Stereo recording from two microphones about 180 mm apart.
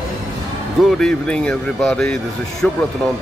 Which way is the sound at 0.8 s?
5° left (ahead or behind).